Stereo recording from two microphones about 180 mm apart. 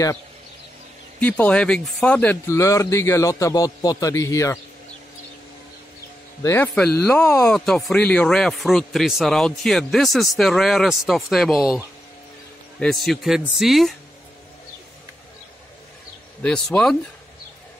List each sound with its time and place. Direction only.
1.2 s speech: 5° left (ahead or behind)
6.4 s speech: 15° left (ahead or behind)
16.4 s speech: 5° left (ahead or behind)